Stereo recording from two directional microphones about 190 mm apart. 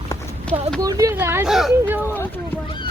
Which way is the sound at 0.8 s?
15° right (ahead or behind).